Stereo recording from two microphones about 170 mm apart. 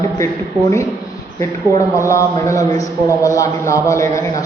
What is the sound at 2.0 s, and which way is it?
A man's voice, 20° left (ahead or behind).